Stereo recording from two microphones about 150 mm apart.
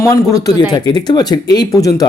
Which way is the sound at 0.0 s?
20° left (ahead or behind).